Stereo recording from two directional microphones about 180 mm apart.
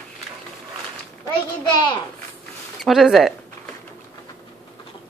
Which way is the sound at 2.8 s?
Centre (ahead or behind).